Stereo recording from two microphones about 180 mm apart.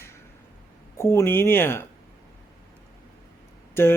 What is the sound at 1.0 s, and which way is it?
Speech, 15° left (ahead or behind).